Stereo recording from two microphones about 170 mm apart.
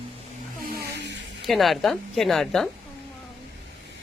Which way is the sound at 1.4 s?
Centre (ahead or behind).